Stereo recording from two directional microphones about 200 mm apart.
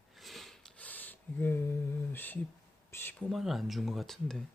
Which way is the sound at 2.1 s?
10° left (ahead or behind).